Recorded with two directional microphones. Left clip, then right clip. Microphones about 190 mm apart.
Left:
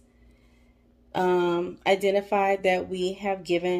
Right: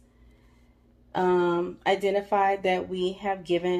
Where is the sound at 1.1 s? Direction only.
30° left (ahead or behind).